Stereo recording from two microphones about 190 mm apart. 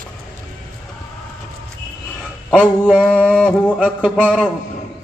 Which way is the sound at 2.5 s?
5° right (ahead or behind).